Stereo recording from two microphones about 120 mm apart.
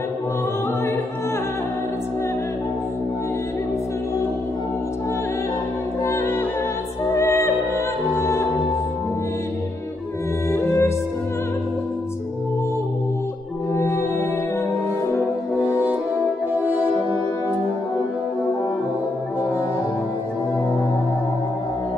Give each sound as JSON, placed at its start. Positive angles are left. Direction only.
{"t": 6.0, "sound": "music", "side_deg": 25}
{"t": 10.5, "sound": "music", "side_deg": 25}
{"t": 13.7, "sound": "music", "side_deg": 20}